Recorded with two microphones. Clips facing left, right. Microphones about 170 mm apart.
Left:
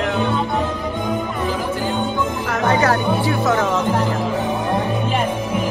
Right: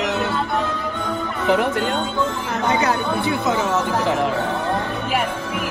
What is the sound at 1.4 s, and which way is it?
Music, 70° right (ahead or behind).